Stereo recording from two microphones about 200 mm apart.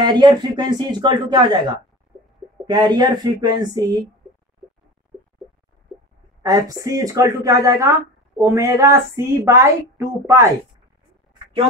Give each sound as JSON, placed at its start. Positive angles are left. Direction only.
{"t": 0.0, "sound": "speech", "side_deg": -20}
{"t": 6.4, "sound": "a woman's voice", "side_deg": -15}